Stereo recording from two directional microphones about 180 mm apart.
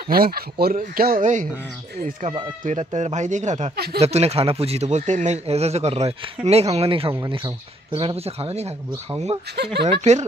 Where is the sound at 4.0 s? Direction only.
35° right (ahead or behind).